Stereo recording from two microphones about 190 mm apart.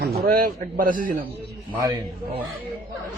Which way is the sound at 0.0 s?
50° right (ahead or behind).